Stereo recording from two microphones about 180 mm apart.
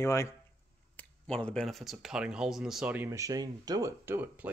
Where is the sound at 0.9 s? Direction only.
5° left (ahead or behind); by 4.4 s 10° right (ahead or behind).